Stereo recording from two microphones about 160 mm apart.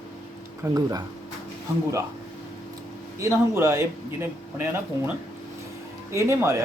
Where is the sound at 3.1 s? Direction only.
20° right (ahead or behind).